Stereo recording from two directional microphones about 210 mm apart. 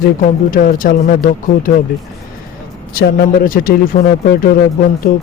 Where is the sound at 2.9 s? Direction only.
45° left (ahead or behind).